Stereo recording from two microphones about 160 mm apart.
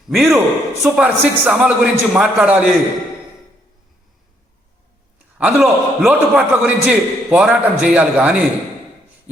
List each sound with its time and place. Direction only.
0.1 s a man's voice: centre (ahead or behind)
5.4 s a man's voice: 10° right (ahead or behind)